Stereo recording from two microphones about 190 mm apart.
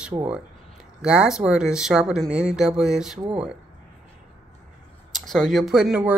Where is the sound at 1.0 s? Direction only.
5° right (ahead or behind).